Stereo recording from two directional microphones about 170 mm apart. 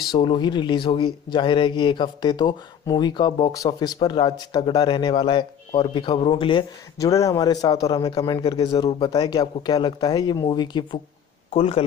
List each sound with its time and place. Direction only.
0.1 s speech: 25° left (ahead or behind)
7.0 s speech: 20° left (ahead or behind)